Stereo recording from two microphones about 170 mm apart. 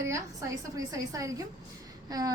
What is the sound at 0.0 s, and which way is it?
A woman's voice, 20° right (ahead or behind).